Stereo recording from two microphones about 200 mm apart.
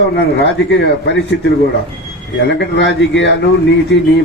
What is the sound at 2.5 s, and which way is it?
A man's voice, 60° left (ahead or behind).